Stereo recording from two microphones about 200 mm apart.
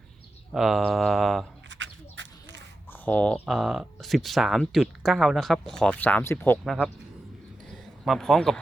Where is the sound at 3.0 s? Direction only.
5° left (ahead or behind).